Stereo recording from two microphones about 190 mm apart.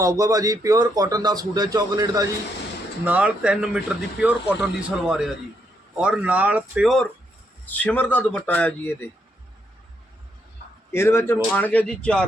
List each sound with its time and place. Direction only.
0.0 s speech: 15° right (ahead or behind)
3.0 s speech: 5° right (ahead or behind); by 9.0 s 10° left (ahead or behind)
10.9 s speech: 15° left (ahead or behind)